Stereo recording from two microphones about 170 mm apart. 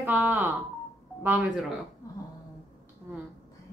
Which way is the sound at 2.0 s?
20° left (ahead or behind).